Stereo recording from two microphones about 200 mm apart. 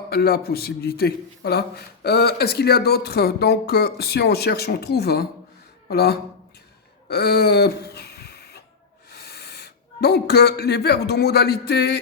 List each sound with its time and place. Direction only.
0.1 s a man's voice: 50° left (ahead or behind)
7.1 s a sound: 55° left (ahead or behind)
9.1 s speech: 55° left (ahead or behind)